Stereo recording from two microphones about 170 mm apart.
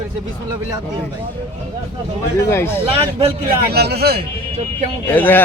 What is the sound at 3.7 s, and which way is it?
Speech, 70° right (ahead or behind).